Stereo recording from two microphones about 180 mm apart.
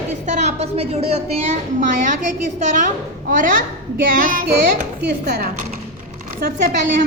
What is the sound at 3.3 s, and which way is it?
A child's voice, 50° right (ahead or behind).